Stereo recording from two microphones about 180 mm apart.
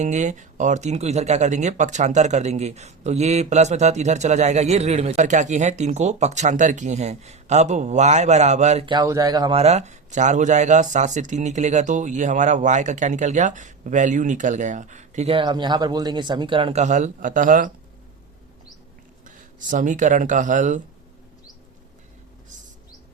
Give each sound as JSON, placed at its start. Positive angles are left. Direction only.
{"t": 0.0, "sound": "speech", "side_deg": -40}
{"t": 8.9, "sound": "speech", "side_deg": -20}
{"t": 9.6, "sound": "speech", "side_deg": -35}
{"t": 15.3, "sound": "speech", "side_deg": -25}
{"t": 19.2, "sound": "speech", "side_deg": -45}